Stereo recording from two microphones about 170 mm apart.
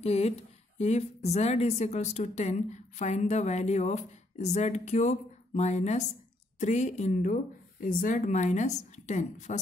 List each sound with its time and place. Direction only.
0.0 s a woman's voice: 40° left (ahead or behind)